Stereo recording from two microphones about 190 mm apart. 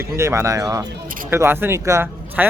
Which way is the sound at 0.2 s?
15° right (ahead or behind).